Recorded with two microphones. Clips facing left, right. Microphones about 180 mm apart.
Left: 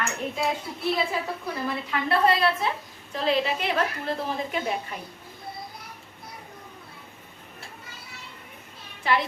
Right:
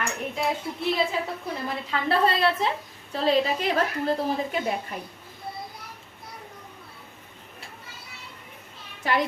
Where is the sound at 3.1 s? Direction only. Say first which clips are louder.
Right 2 dB; 35° right (ahead or behind).